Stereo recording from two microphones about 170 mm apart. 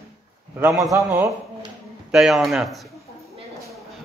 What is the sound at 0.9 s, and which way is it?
Speech, 15° right (ahead or behind).